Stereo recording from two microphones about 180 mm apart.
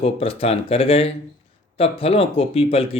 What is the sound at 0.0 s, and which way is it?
Speech, 30° left (ahead or behind).